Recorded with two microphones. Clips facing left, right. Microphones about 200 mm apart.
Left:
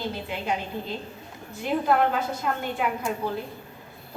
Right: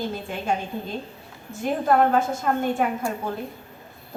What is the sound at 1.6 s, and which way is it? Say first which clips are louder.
A woman's voice: right 3 dB; 45° right (ahead or behind).